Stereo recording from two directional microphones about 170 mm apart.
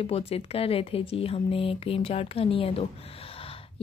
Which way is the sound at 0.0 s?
35° left (ahead or behind).